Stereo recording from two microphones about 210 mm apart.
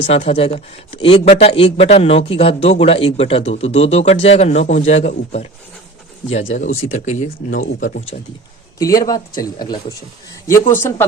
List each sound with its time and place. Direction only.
0.0 s speech: 30° left (ahead or behind)
6.9 s speech: 35° left (ahead or behind)
8.8 s speech: 15° left (ahead or behind)